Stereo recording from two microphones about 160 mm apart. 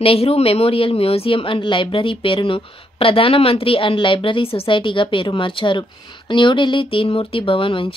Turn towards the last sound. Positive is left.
turn(degrees=35)  # may be behind; listen again after turning